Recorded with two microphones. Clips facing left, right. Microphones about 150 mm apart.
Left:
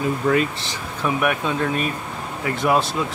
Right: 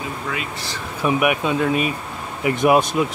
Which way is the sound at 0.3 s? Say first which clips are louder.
Left 11 dB; 45° left (ahead or behind).